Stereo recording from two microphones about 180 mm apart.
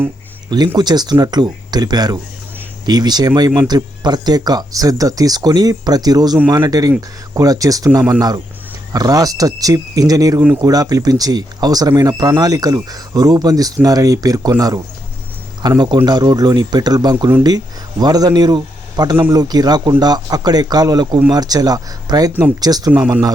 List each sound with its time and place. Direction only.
0.8 s speech: 25° right (ahead or behind)
8.9 s a man's voice: 20° right (ahead or behind)
22.3 s speech: 10° right (ahead or behind)
22.6 s speech: 20° right (ahead or behind)